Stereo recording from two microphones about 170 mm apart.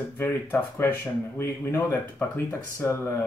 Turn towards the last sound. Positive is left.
turn(degrees=15)  # may be behind; listen again after turning